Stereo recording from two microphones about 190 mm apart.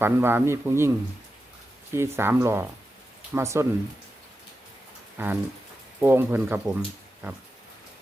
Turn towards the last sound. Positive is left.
turn(degrees=-10)  # may be behind; listen again after turning